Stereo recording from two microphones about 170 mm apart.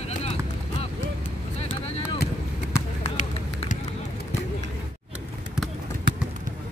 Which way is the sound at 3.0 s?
45° left (ahead or behind).